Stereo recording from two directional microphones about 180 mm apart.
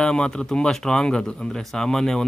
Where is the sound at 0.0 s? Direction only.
5° left (ahead or behind).